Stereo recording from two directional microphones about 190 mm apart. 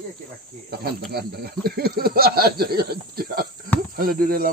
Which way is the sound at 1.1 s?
55° right (ahead or behind).